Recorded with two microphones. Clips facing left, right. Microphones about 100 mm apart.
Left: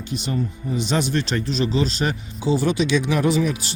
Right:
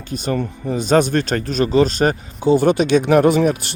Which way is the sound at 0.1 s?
45° right (ahead or behind).